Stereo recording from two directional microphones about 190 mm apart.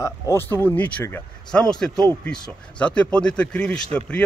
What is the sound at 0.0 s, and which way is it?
A man's voice, 10° left (ahead or behind).